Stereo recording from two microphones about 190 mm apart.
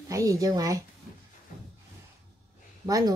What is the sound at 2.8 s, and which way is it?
Speech, 20° right (ahead or behind).